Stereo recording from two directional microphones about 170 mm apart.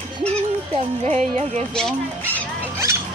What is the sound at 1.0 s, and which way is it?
Speech, 40° right (ahead or behind).